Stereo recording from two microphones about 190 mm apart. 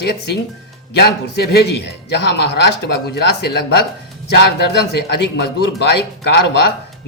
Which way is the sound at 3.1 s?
60° left (ahead or behind).